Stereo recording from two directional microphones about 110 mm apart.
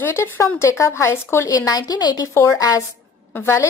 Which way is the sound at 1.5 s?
35° left (ahead or behind).